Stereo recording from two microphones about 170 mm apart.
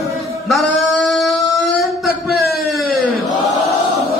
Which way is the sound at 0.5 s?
Centre (ahead or behind).